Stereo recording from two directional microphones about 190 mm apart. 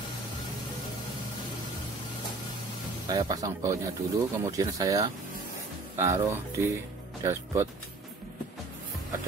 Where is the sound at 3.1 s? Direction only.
20° right (ahead or behind).